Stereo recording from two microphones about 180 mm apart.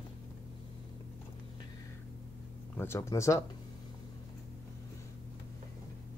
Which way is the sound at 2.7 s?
15° left (ahead or behind).